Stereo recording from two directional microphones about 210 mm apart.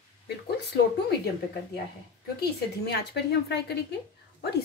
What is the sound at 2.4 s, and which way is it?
Speech, 50° left (ahead or behind).